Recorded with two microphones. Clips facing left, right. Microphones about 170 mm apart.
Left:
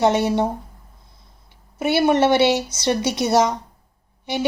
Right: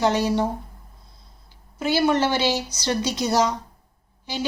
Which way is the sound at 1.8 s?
20° left (ahead or behind).